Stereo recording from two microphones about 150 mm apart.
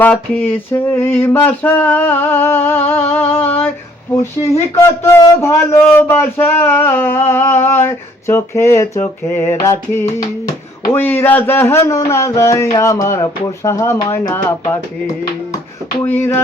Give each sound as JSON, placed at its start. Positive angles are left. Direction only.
{"t": 0.0, "sound": "speech", "side_deg": 10}
{"t": 16.0, "sound": "speech", "side_deg": 15}